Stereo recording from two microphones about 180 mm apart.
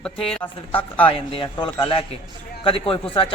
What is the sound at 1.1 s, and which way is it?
A man's voice, 30° left (ahead or behind).